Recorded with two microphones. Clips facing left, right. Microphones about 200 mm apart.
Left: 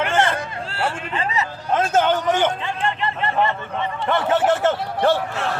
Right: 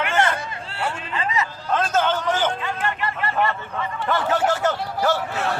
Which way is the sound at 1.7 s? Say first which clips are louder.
Left 3 dB; 15° left (ahead or behind).